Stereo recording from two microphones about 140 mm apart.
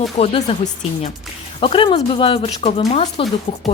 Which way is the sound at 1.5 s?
40° left (ahead or behind).